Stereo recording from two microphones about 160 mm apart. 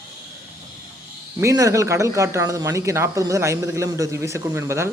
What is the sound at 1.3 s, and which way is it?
Speech, 20° right (ahead or behind).